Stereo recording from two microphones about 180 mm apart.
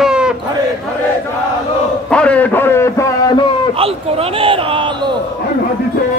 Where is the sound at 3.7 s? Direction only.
30° right (ahead or behind).